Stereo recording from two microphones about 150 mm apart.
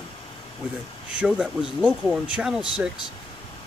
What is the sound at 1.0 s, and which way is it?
Speech, 5° right (ahead or behind).